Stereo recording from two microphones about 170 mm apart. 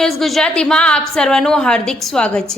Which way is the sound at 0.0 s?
Centre (ahead or behind).